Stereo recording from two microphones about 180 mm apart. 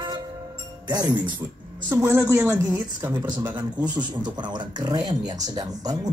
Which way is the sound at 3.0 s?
20° right (ahead or behind).